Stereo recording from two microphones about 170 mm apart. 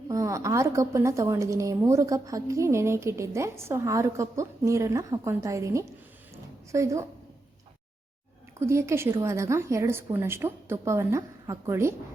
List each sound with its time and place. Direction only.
0.1 s a woman's voice: 15° right (ahead or behind)
6.3 s a sound: 15° right (ahead or behind)
8.5 s a woman's voice: 15° right (ahead or behind)